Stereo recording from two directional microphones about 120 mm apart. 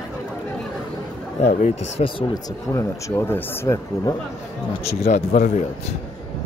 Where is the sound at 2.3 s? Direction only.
25° left (ahead or behind).